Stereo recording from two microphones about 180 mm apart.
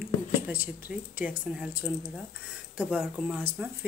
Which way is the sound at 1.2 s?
5° right (ahead or behind).